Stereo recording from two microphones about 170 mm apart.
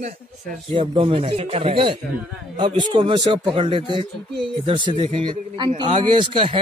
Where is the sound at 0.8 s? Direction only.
30° right (ahead or behind).